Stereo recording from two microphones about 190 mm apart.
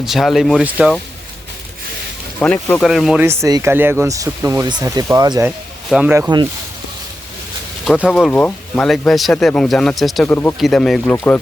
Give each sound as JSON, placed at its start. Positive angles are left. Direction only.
{"t": 0.0, "sound": "speech", "side_deg": 0}
{"t": 2.4, "sound": "speech", "side_deg": 5}
{"t": 3.2, "sound": "speech", "side_deg": -15}
{"t": 5.5, "sound": "speech", "side_deg": -5}
{"t": 7.9, "sound": "speech", "side_deg": 0}
{"t": 10.2, "sound": "speech", "side_deg": 10}
{"t": 10.6, "sound": "speech", "side_deg": 0}